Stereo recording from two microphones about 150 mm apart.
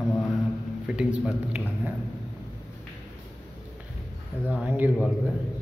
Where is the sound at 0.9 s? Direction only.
5° right (ahead or behind).